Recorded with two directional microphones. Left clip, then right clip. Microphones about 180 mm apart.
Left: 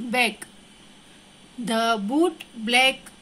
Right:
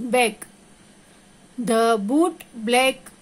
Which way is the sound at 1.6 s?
50° right (ahead or behind).